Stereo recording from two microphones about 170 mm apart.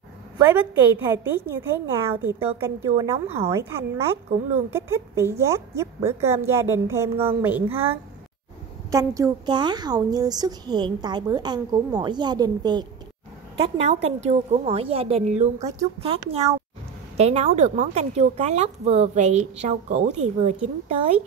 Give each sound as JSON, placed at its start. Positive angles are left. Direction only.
{"t": 0.6, "sound": "a woman's voice", "side_deg": -10}
{"t": 8.9, "sound": "a woman's voice", "side_deg": -20}
{"t": 13.6, "sound": "speech", "side_deg": -35}